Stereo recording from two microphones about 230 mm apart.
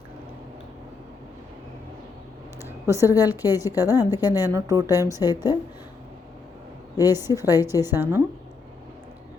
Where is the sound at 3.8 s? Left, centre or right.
Centre.